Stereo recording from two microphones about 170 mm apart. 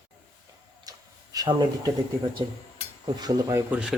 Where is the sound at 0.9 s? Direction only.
20° right (ahead or behind).